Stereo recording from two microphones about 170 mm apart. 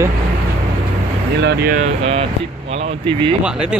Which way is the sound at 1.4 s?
70° right (ahead or behind).